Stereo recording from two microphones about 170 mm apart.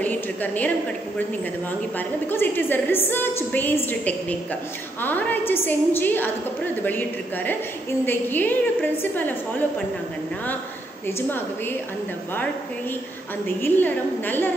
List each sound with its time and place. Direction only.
0.0 s a woman's voice: 10° left (ahead or behind)
2.3 s a woman's voice: 10° left (ahead or behind)
11.1 s a woman's voice: 15° left (ahead or behind)
13.6 s a woman's voice: 10° left (ahead or behind)